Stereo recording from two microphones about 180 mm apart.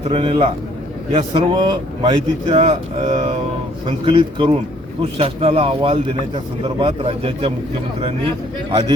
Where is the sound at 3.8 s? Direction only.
30° right (ahead or behind).